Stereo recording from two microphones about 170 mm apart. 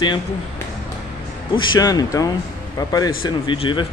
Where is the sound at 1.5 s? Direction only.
25° left (ahead or behind).